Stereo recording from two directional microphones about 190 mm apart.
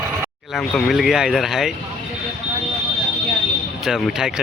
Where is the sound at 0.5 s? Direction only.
Centre (ahead or behind).